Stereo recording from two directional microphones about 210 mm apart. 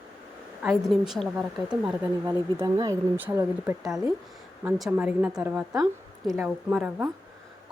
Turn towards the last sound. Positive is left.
turn(degrees=-5)  # may be behind; listen again after turning